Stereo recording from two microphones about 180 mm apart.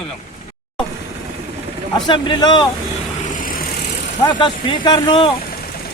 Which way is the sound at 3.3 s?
50° left (ahead or behind).